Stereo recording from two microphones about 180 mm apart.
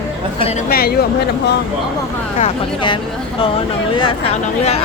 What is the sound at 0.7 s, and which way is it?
Speech, 60° left (ahead or behind).